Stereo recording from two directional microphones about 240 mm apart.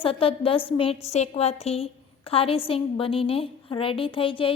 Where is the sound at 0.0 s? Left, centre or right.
Left.